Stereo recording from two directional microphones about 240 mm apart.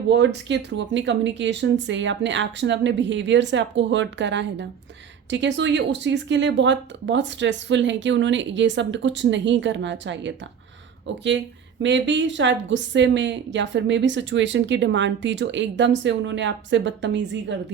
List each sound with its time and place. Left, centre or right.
0.1 s a woman's voice: right